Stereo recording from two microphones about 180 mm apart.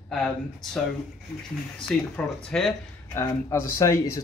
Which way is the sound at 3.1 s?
15° left (ahead or behind).